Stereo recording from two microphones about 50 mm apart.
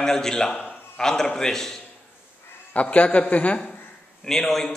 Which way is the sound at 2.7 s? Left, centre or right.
Left.